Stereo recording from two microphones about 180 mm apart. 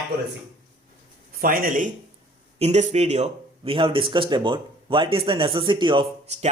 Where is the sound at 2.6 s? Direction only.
40° right (ahead or behind).